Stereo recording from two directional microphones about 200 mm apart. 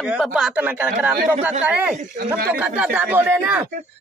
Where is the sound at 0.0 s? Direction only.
5° right (ahead or behind).